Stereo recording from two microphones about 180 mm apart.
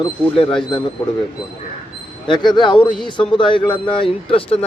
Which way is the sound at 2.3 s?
25° left (ahead or behind).